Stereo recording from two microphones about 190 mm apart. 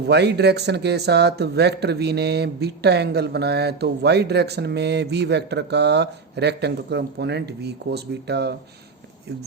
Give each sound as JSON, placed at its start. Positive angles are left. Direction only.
{"t": 0.0, "sound": "speech", "side_deg": -60}